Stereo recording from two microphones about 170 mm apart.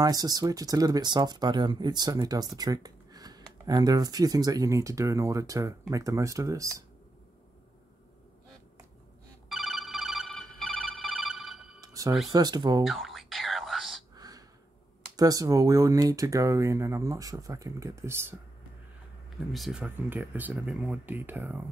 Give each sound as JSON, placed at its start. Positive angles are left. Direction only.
{"t": 0.0, "sound": "speech", "side_deg": -20}
{"t": 9.5, "sound": "ringtone", "side_deg": 0}
{"t": 11.8, "sound": "music", "side_deg": -20}
{"t": 12.3, "sound": "speech", "side_deg": -25}
{"t": 12.8, "sound": "whispering", "side_deg": 0}
{"t": 14.1, "sound": "a sound", "side_deg": -20}
{"t": 15.1, "sound": "speech", "side_deg": -20}
{"t": 19.5, "sound": "speech", "side_deg": 0}